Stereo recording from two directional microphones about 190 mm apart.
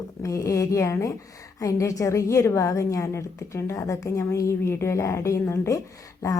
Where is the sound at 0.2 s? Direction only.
15° left (ahead or behind).